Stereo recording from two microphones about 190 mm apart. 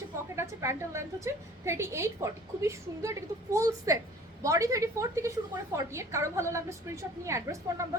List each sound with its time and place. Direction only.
0.3 s a woman's voice: 15° right (ahead or behind)